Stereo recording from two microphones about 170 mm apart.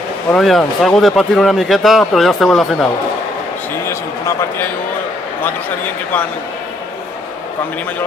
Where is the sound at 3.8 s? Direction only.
15° left (ahead or behind).